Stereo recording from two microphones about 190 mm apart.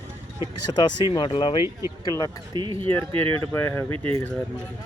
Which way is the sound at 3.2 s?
10° left (ahead or behind).